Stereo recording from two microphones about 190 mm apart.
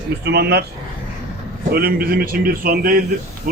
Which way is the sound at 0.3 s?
60° right (ahead or behind).